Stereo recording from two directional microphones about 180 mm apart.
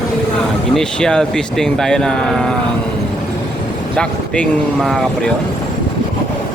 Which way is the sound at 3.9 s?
5° left (ahead or behind).